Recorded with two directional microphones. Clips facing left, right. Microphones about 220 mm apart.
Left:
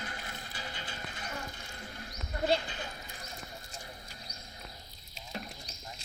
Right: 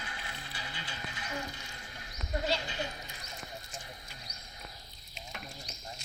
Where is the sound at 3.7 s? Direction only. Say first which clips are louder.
Even; 40° left (ahead or behind).